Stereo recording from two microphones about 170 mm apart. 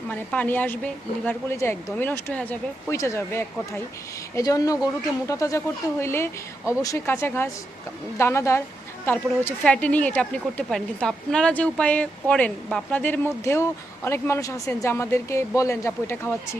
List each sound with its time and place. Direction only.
0.1 s speech: 10° left (ahead or behind)